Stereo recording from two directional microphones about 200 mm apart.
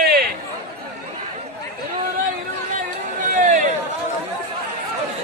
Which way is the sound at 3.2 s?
40° right (ahead or behind).